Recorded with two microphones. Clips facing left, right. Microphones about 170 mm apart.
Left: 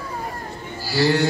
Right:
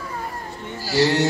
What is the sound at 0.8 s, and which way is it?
Music, 45° right (ahead or behind).